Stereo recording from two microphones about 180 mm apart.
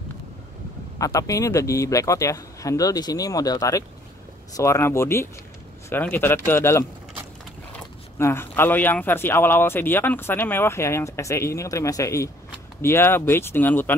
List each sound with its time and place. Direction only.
0.9 s speech: 20° left (ahead or behind)